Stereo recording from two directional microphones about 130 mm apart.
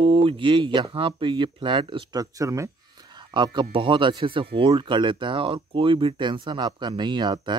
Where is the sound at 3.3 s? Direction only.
35° right (ahead or behind).